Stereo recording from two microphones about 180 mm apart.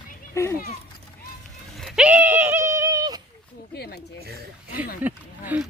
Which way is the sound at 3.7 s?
60° left (ahead or behind).